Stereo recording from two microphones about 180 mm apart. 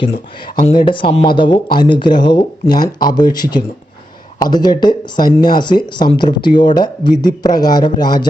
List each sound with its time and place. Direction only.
0.5 s speech: 35° left (ahead or behind)